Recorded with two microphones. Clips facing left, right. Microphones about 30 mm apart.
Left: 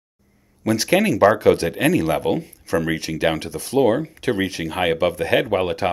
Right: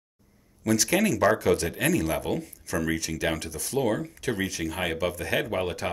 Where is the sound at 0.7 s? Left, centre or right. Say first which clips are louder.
Left 6 dB; left.